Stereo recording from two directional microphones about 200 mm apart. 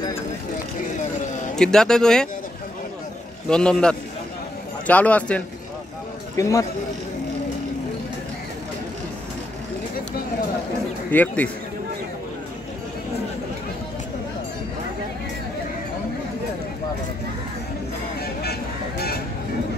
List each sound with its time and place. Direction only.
1.5 s a man's voice: 5° left (ahead or behind)
3.4 s a man's voice: 5° left (ahead or behind)
11.1 s a man's voice: 10° left (ahead or behind)
18.4 s vehicle: 55° left (ahead or behind)